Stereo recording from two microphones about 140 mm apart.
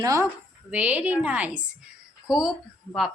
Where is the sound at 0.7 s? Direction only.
10° right (ahead or behind).